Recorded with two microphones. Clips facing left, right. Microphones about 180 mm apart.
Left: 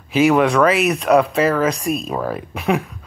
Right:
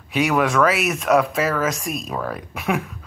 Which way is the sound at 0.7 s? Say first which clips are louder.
Left 4 dB; centre (ahead or behind).